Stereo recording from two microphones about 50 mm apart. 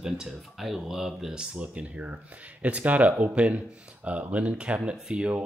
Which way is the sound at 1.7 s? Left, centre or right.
Right.